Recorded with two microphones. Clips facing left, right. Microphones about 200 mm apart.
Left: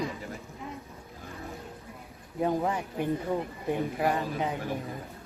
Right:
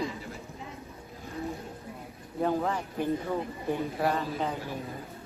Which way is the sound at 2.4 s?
15° left (ahead or behind).